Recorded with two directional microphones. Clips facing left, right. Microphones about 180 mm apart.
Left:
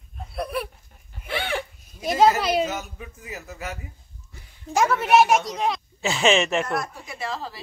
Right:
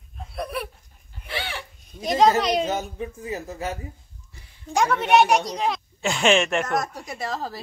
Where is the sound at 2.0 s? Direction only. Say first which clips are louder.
Even; 5° left (ahead or behind).